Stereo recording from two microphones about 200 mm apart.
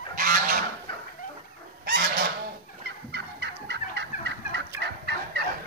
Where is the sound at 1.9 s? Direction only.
50° right (ahead or behind).